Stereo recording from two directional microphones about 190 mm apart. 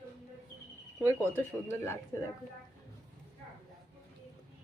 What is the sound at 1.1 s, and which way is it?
Speech, 15° left (ahead or behind).